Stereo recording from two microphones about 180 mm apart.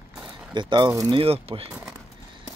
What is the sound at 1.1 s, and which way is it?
Speech, 35° right (ahead or behind).